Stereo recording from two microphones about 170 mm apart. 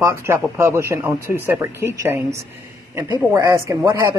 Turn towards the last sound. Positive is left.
turn(degrees=-15)  # may be behind; listen again after turning